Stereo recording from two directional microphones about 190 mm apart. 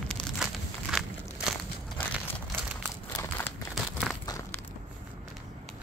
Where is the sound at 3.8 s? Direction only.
Centre (ahead or behind).